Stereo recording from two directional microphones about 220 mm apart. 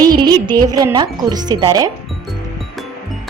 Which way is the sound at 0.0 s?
20° right (ahead or behind).